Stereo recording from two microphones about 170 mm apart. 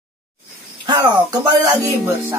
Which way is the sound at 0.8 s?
25° right (ahead or behind).